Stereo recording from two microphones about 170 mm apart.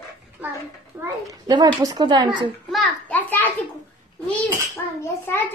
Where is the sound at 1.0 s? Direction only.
20° right (ahead or behind).